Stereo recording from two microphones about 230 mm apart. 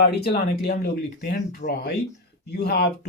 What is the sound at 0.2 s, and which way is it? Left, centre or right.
Speech, left.